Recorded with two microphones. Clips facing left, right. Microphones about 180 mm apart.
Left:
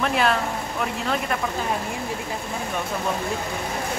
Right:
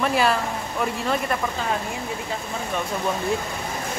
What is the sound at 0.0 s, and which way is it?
Speech, centre (ahead or behind).